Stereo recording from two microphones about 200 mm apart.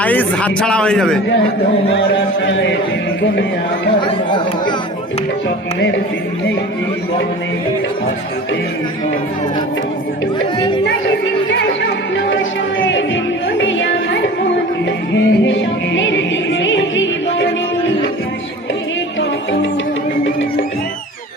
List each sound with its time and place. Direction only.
0.0 s a man's voice: 5° left (ahead or behind)
1.9 s a man's voice: 65° left (ahead or behind)
12.1 s music: 70° left (ahead or behind)